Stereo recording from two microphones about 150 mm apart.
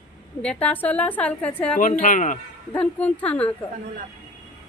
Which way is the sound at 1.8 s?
65° left (ahead or behind).